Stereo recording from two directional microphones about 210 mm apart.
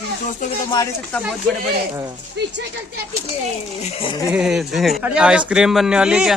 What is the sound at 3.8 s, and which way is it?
Speech, 25° left (ahead or behind).